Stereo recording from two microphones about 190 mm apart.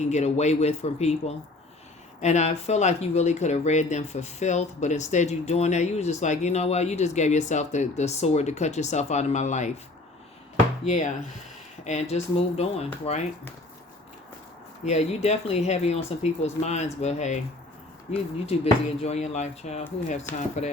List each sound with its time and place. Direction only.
0.0 s speech: 35° left (ahead or behind)
10.8 s speech: 40° left (ahead or behind)
14.8 s speech: 35° left (ahead or behind)